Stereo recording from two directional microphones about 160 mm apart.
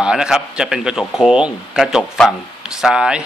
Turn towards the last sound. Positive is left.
turn(degrees=-5)  # may be behind; listen again after turning